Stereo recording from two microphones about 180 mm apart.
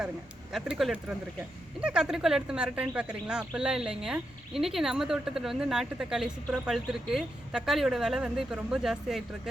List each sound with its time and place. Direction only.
0.5 s speech: centre (ahead or behind)